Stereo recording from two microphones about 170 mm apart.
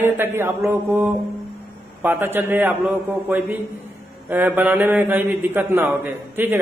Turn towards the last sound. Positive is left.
turn(degrees=-10)  # may be behind; listen again after turning